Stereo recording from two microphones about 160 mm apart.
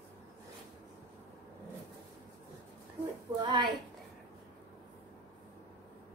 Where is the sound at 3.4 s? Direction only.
30° right (ahead or behind).